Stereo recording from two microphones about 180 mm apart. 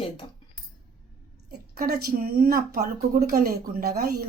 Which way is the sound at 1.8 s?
55° right (ahead or behind).